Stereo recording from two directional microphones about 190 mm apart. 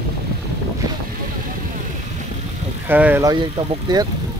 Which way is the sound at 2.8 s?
10° right (ahead or behind).